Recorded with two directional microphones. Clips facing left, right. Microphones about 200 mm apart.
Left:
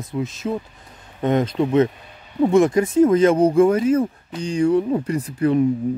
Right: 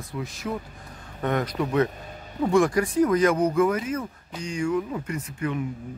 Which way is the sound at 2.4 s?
20° left (ahead or behind).